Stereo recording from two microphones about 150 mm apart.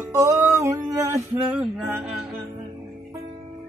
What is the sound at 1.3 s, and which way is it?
Music, 5° right (ahead or behind).